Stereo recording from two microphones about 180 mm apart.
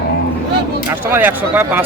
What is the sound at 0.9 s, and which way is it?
Speech, 10° right (ahead or behind).